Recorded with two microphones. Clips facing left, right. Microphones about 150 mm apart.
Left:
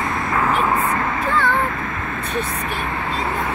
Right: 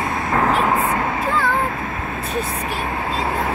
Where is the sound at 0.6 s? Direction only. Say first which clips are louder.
Right 1 dB; 25° right (ahead or behind).